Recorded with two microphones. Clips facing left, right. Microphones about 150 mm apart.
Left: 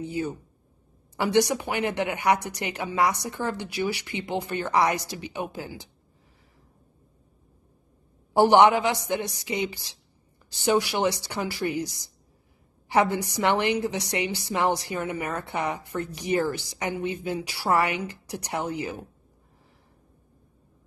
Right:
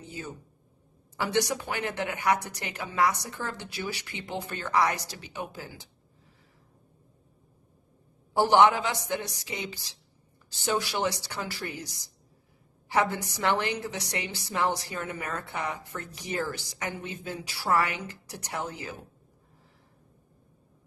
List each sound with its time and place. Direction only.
0.0 s a woman's voice: 15° left (ahead or behind)
8.3 s a woman's voice: 20° left (ahead or behind)